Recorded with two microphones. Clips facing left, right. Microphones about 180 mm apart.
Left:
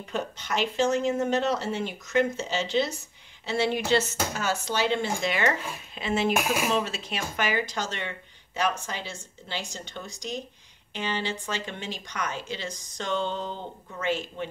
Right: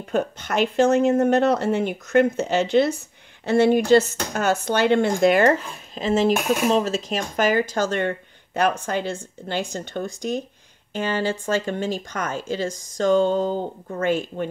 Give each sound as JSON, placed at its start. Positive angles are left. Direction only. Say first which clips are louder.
{"t": 0.0, "sound": "speech", "louder": "right 8 dB", "side_deg": -55}
{"t": 6.3, "sound": "speech", "louder": "right 5 dB", "side_deg": 0}
{"t": 6.7, "sound": "speech", "louder": "right 7 dB", "side_deg": -40}